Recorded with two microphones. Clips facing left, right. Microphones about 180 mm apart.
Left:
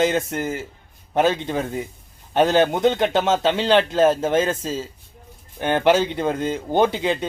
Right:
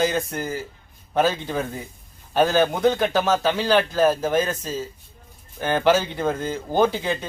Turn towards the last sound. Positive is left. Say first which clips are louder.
# left 2 dB
turn(degrees=20)  # may be behind; listen again after turning